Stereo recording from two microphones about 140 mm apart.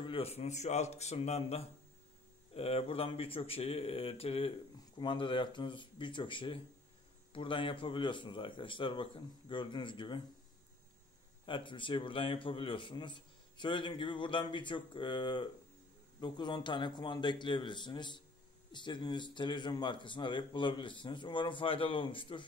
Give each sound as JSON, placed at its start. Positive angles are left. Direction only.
{"t": 0.0, "sound": "speech", "side_deg": 45}
{"t": 11.4, "sound": "speech", "side_deg": 35}